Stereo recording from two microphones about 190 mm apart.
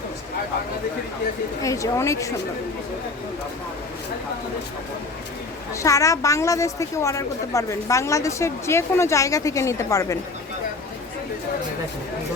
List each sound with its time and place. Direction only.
1.6 s a woman's voice: 15° left (ahead or behind)
5.7 s a woman's voice: 15° left (ahead or behind)